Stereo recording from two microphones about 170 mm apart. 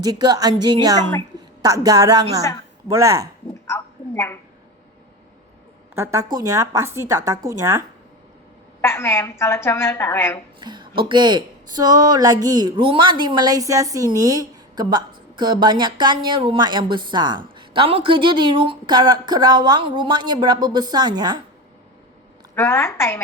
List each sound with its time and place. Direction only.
0.0 s speech: 20° right (ahead or behind)
3.7 s a sound: 15° left (ahead or behind)
5.9 s a woman's voice: 15° right (ahead or behind)
8.8 s a woman's voice: 15° left (ahead or behind)
10.6 s speech: 25° right (ahead or behind)
22.5 s a woman's voice: 15° left (ahead or behind)